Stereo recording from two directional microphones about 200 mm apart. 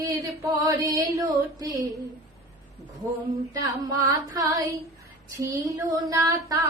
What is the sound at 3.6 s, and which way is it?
Female singing, 15° right (ahead or behind).